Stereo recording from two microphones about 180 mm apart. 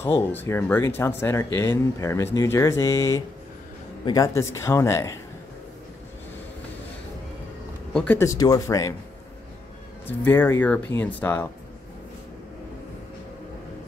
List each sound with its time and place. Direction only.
0.0 s speech: 15° left (ahead or behind)
7.9 s speech: 10° left (ahead or behind)
10.0 s speech: 10° left (ahead or behind)